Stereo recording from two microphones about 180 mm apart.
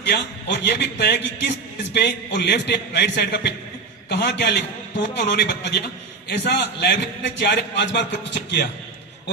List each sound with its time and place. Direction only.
0.0 s a man's voice: 75° left (ahead or behind)